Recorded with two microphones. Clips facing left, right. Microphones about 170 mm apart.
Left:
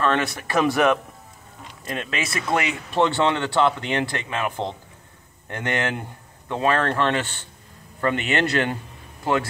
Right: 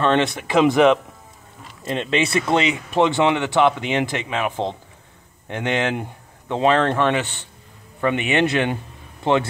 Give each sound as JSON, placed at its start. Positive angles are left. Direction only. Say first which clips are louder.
{"t": 0.0, "sound": "speech", "louder": "right 4 dB", "side_deg": -25}